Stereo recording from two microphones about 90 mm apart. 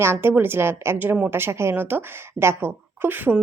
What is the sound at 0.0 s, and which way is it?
A woman's voice, 25° right (ahead or behind).